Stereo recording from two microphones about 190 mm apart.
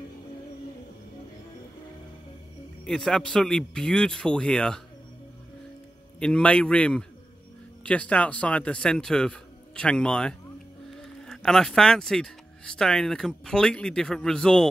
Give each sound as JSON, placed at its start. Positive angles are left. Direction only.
{"t": 2.8, "sound": "a man's voice", "side_deg": 0}
{"t": 6.1, "sound": "a man's voice", "side_deg": 5}